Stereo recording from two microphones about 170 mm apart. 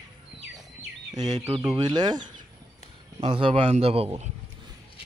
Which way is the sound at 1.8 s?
25° right (ahead or behind).